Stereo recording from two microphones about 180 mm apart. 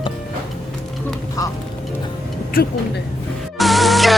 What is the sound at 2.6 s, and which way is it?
Speech, 55° left (ahead or behind).